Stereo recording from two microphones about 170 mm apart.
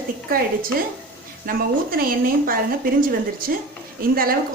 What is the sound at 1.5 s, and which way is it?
A woman's voice, 60° right (ahead or behind).